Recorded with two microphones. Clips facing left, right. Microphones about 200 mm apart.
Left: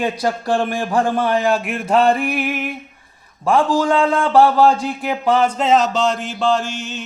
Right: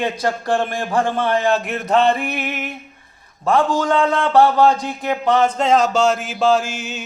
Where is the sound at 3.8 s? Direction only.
10° left (ahead or behind); by 7.0 s 5° right (ahead or behind).